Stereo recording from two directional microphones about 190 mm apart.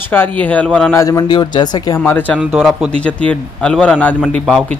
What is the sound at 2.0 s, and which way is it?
Speech, 10° left (ahead or behind).